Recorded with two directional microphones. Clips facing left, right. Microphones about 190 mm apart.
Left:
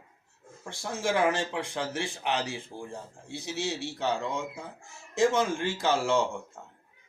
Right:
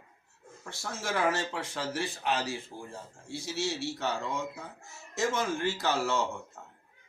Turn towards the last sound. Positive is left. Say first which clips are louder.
# left 4 dB
turn(degrees=15)  # may be behind; listen again after turning